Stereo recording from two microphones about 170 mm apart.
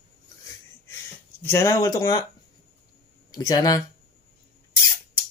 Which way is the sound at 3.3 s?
25° left (ahead or behind).